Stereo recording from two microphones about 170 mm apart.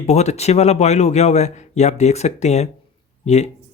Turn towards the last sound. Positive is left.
turn(degrees=40)  # may be behind; listen again after turning